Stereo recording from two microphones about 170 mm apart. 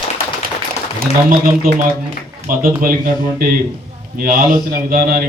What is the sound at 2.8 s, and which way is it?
A man's voice, 55° right (ahead or behind).